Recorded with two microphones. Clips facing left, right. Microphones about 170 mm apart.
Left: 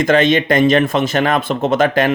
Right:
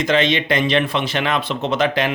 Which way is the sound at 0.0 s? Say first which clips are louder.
Left 5 dB; 50° left (ahead or behind).